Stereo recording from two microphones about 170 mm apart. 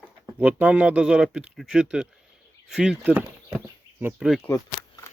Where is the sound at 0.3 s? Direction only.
10° right (ahead or behind).